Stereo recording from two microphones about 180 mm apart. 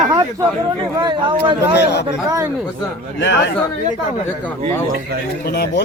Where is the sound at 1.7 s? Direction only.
70° left (ahead or behind).